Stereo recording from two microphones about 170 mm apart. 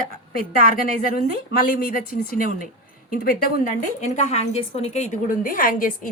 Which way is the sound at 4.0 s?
45° left (ahead or behind).